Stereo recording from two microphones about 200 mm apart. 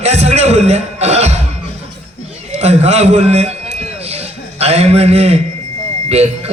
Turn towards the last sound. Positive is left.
turn(degrees=-30)  # may be behind; listen again after turning